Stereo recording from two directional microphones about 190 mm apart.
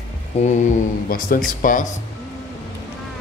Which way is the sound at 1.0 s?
50° left (ahead or behind).